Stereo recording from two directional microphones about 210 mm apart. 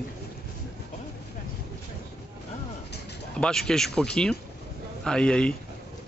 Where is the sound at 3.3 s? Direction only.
5° left (ahead or behind).